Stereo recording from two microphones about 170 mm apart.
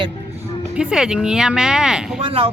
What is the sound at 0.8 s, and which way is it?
Speech, 5° right (ahead or behind).